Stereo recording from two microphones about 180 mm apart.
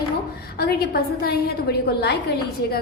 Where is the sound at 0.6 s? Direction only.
60° left (ahead or behind).